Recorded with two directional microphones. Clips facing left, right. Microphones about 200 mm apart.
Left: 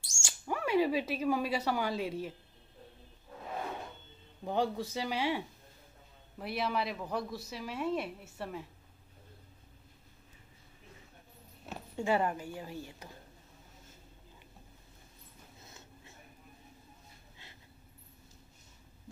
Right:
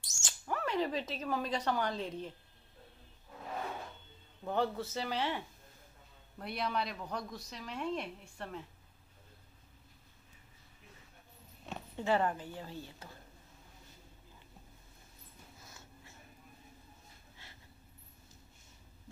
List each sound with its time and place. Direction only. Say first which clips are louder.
0.2 s speech: left 2 dB; 10° left (ahead or behind)
4.5 s a woman's voice: left 1 dB; 15° left (ahead or behind)
11.6 s speech: left 2 dB; 10° left (ahead or behind)
15.6 s dog: left 1 dB; 20° left (ahead or behind)